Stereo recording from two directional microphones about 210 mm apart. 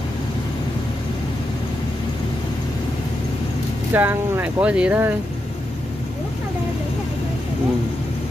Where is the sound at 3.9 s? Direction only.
10° right (ahead or behind).